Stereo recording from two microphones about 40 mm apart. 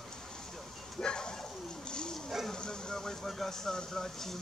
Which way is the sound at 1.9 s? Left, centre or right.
Left.